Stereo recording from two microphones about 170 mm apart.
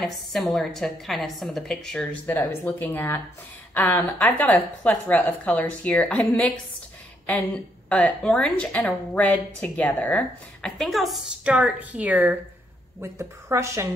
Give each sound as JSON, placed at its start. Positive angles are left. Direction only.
{"t": 0.0, "sound": "a woman's voice", "side_deg": 0}